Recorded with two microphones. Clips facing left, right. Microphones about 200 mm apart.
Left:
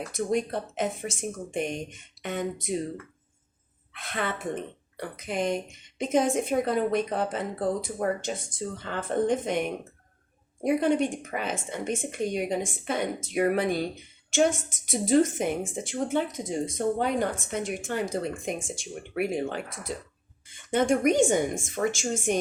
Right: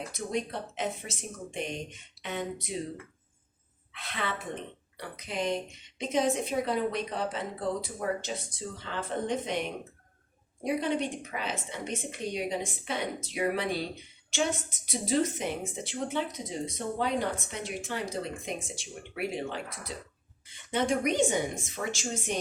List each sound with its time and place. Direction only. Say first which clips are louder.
0.1 s speech: left 8 dB; 50° left (ahead or behind)
3.9 s speech: left 4 dB; 50° left (ahead or behind)